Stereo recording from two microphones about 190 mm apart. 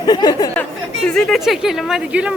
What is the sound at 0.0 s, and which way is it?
Speech, 20° left (ahead or behind).